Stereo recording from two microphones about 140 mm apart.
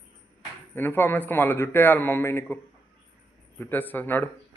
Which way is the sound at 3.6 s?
15° left (ahead or behind).